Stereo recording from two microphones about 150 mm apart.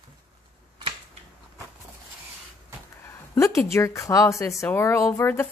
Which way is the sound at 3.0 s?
20° left (ahead or behind).